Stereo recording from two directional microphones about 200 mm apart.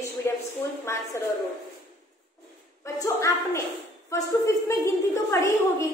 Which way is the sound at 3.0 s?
15° left (ahead or behind).